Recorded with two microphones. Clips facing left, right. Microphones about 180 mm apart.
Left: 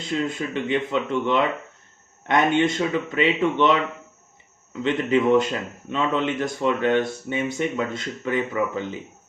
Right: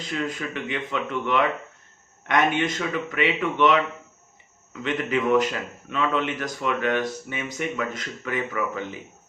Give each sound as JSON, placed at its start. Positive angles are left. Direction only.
{"t": 0.0, "sound": "speech", "side_deg": 25}